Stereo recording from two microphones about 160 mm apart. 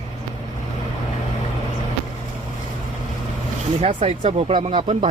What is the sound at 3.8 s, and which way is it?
Speech, 40° right (ahead or behind).